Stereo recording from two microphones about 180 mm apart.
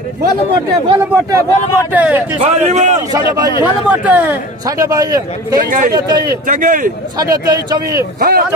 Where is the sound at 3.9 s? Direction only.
10° right (ahead or behind).